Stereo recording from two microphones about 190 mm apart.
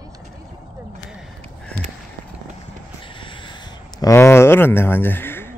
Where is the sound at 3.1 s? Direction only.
25° left (ahead or behind).